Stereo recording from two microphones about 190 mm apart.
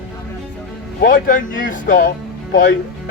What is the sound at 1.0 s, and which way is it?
A man's voice, 45° left (ahead or behind).